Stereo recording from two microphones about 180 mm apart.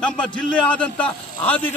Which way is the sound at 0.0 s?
5° left (ahead or behind).